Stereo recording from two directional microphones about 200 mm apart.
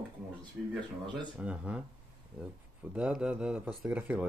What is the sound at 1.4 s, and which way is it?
Speech, 5° right (ahead or behind).